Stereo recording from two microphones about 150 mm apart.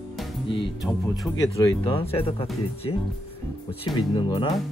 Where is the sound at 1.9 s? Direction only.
35° left (ahead or behind).